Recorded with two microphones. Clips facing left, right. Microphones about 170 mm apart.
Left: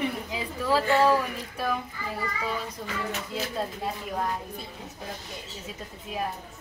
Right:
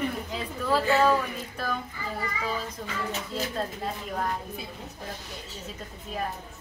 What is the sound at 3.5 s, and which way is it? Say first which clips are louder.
Speech: even; 5° left (ahead or behind).